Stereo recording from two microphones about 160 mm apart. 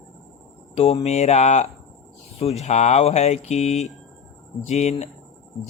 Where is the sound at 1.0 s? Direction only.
45° left (ahead or behind).